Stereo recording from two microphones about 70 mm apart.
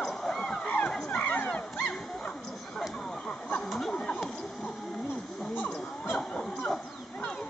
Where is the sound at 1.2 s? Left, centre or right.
Left.